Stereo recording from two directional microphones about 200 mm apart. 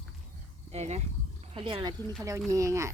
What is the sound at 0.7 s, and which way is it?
Speech, 30° right (ahead or behind).